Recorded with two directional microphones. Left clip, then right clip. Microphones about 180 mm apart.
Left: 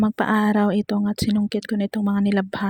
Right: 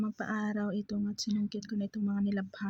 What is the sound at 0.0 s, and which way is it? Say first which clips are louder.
Speech: left 15 dB; 50° left (ahead or behind).